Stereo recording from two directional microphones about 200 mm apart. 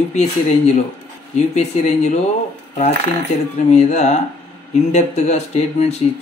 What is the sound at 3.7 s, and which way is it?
Speech, 35° left (ahead or behind).